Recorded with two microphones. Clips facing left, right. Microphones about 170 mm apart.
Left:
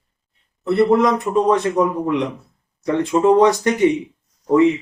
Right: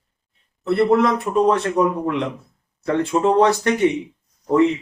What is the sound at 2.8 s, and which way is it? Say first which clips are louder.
Speech: left 3 dB; 15° left (ahead or behind).